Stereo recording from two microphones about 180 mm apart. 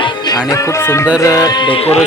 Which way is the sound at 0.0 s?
20° left (ahead or behind).